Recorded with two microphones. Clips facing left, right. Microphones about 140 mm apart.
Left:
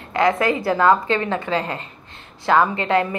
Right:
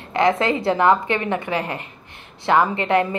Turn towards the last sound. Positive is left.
turn(degrees=-20)  # may be behind; listen again after turning